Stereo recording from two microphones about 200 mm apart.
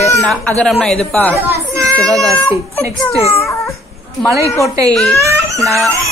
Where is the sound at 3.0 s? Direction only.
15° left (ahead or behind).